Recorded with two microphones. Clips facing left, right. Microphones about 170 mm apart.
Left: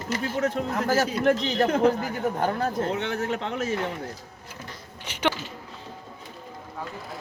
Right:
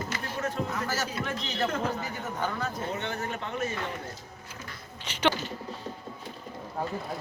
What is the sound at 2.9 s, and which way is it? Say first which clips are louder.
Speech: left 6 dB; 85° left.